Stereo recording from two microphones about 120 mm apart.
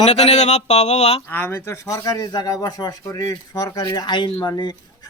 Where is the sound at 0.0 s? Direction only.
65° left (ahead or behind).